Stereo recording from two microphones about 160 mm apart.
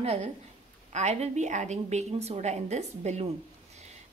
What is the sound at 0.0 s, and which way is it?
A woman's voice, 40° right (ahead or behind).